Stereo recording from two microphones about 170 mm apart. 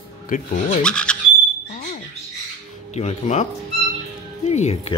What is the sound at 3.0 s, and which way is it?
Speech, 40° left (ahead or behind).